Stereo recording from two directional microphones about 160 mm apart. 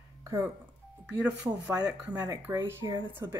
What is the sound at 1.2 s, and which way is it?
Speech, 10° right (ahead or behind).